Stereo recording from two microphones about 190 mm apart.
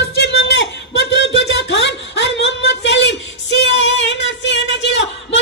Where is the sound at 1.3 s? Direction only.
70° left (ahead or behind).